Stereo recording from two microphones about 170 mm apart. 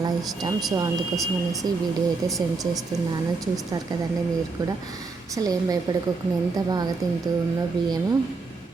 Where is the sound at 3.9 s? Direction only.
25° right (ahead or behind).